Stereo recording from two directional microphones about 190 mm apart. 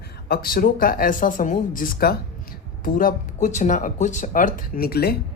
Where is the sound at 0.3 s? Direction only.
50° left (ahead or behind).